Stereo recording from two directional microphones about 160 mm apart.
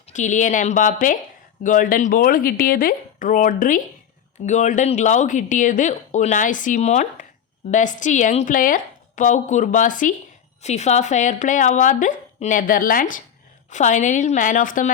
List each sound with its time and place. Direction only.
0.1 s speech: 50° left (ahead or behind)